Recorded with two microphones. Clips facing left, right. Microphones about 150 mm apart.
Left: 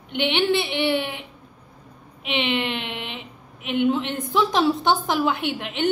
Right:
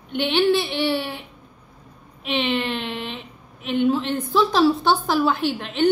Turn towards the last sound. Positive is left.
turn(degrees=15)  # may be behind; listen again after turning